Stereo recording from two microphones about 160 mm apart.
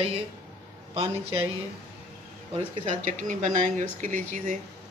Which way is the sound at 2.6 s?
40° right (ahead or behind).